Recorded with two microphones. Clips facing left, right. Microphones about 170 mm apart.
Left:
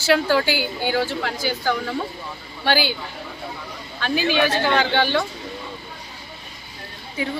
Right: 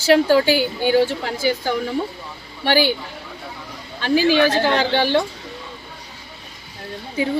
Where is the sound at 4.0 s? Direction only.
30° right (ahead or behind).